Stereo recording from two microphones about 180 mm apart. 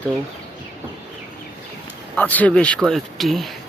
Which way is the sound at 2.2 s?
10° left (ahead or behind).